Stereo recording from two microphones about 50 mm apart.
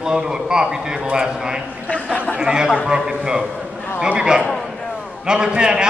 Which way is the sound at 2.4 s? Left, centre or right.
Centre.